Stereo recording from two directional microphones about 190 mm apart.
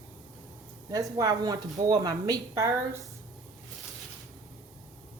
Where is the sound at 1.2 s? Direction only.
20° right (ahead or behind).